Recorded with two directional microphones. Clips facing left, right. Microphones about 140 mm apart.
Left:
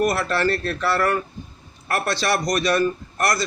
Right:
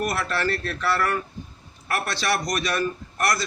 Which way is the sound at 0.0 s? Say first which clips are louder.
Left 5 dB; 25° left (ahead or behind).